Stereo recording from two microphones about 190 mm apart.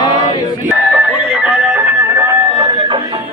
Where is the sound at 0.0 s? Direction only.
25° left (ahead or behind).